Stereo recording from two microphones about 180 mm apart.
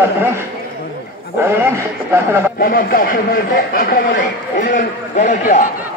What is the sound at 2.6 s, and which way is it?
A man's voice, 55° left (ahead or behind).